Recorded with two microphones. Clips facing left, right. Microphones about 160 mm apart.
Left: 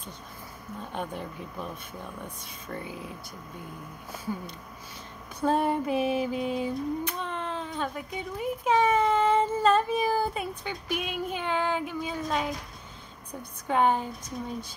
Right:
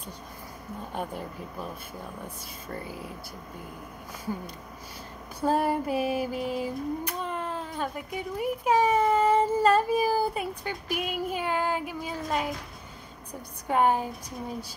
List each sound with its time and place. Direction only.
0.9 s a child's voice: 5° right (ahead or behind)
5.4 s female singing: 5° right (ahead or behind)
8.4 s a child's voice: 10° right (ahead or behind)
13.7 s a child's voice: 10° right (ahead or behind)